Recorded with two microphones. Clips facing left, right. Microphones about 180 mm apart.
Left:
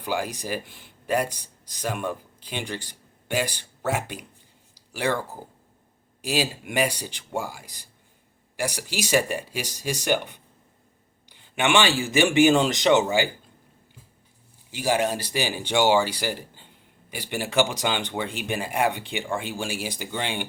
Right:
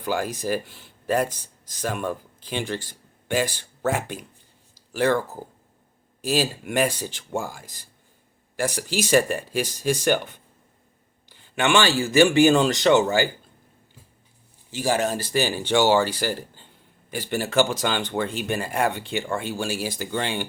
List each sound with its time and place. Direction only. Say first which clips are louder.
0.0 s speech: right 3 dB; 10° left (ahead or behind)
14.7 s speech: even; 10° left (ahead or behind)